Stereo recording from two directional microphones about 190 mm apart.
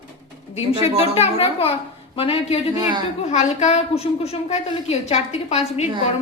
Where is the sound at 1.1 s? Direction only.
30° left (ahead or behind).